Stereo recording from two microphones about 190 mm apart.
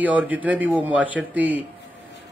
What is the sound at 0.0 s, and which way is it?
Speech, 10° right (ahead or behind).